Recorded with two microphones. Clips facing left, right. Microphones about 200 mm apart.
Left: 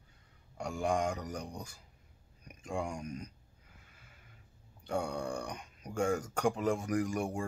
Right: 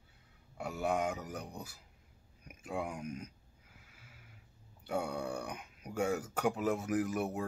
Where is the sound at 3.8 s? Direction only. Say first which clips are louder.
Right 1 dB; 5° right (ahead or behind).